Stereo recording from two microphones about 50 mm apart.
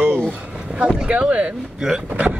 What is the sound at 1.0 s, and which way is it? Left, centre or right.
Speech, right.